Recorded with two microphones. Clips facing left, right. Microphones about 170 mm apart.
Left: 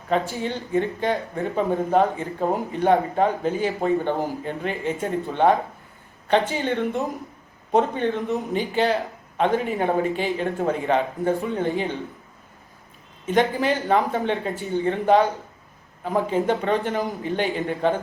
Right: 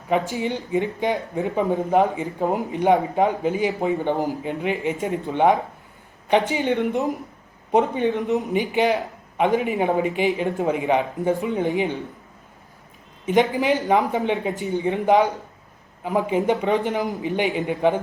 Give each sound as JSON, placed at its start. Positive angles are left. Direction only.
{"t": 0.1, "sound": "a man's voice", "side_deg": -15}
{"t": 13.2, "sound": "a man's voice", "side_deg": -15}